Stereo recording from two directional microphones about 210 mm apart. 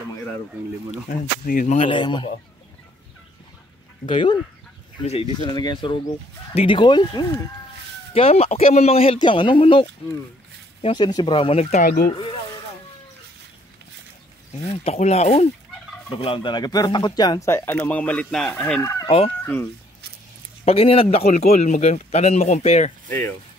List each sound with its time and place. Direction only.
1.0 s speech: 40° left (ahead or behind)
1.8 s speech: 25° left (ahead or behind)
4.0 s speech: 25° left (ahead or behind)
14.7 s speech: 30° left (ahead or behind); by 18.8 s 5° left (ahead or behind)
18.8 s chicken: 15° left (ahead or behind)
19.0 s speech: 30° left (ahead or behind)
19.4 s speech: 10° left (ahead or behind)
20.6 s speech: 25° left (ahead or behind)